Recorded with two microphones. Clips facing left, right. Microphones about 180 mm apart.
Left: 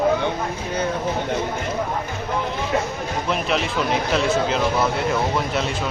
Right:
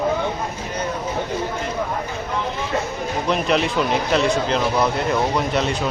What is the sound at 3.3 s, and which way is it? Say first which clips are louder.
Speech: right 4 dB; centre (ahead or behind).